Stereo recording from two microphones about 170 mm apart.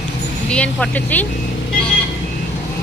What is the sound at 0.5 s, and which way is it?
Speech, 5° left (ahead or behind).